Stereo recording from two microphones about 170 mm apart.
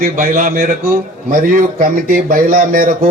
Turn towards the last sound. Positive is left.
turn(degrees=-55)  # may be behind; listen again after turning